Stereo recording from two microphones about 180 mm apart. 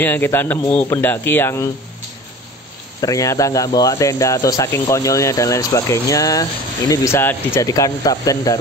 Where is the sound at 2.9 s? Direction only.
20° left (ahead or behind).